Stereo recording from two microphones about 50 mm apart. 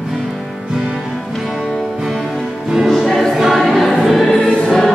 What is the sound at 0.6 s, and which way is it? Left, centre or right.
Music, centre.